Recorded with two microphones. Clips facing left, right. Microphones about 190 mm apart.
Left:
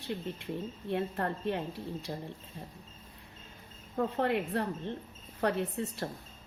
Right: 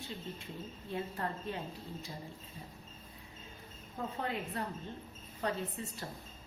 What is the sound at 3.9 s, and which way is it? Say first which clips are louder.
A woman's voice: left 8 dB; 65° left (ahead or behind).